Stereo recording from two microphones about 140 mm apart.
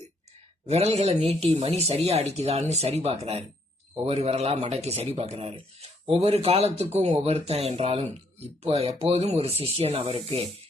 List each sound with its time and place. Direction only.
0.7 s speech: 50° right (ahead or behind)